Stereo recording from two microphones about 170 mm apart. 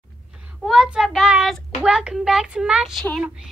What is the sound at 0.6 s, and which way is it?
A child's voice, centre (ahead or behind).